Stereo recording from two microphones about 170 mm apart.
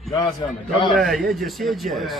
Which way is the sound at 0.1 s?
25° left (ahead or behind).